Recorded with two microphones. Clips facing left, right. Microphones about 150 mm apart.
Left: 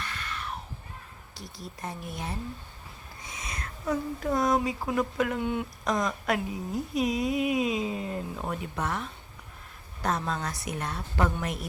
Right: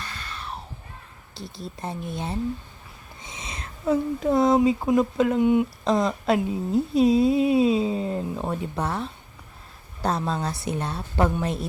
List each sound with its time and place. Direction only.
0.0 s screaming: 35° right (ahead or behind)
1.3 s speech: 25° right (ahead or behind)
5.8 s speech: 30° right (ahead or behind)